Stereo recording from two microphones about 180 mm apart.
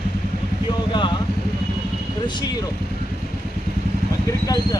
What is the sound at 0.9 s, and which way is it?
Speech, 25° left (ahead or behind).